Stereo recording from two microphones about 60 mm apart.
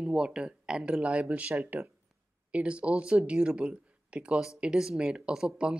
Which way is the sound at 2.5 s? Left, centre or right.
Right.